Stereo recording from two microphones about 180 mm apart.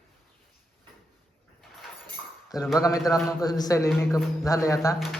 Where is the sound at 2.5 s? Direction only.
20° left (ahead or behind).